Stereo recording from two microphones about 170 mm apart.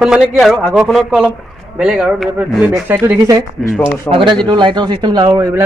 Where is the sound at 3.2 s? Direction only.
20° right (ahead or behind).